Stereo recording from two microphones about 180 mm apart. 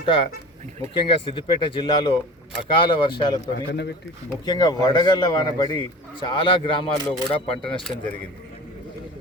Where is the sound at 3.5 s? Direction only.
70° left (ahead or behind).